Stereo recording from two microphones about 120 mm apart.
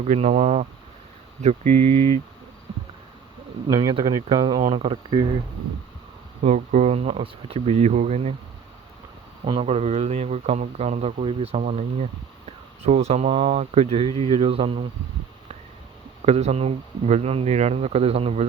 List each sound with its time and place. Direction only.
0.0 s speech: 70° right (ahead or behind)
3.8 s speech: 40° right (ahead or behind)
6.4 s speech: 70° right (ahead or behind)
9.5 s speech: 55° right (ahead or behind)
16.2 s speech: 60° right (ahead or behind)